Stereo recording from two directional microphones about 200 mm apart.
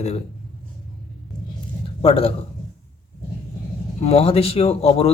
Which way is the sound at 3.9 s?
30° left (ahead or behind).